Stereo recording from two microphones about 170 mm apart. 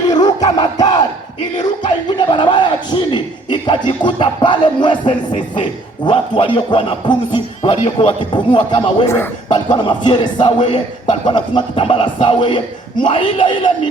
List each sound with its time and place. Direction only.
0.1 s battle cry: 25° left (ahead or behind)
2.3 s a man's voice: 25° left (ahead or behind)
9.0 s a man's voice: 15° left (ahead or behind)
9.5 s a man's voice: 25° left (ahead or behind)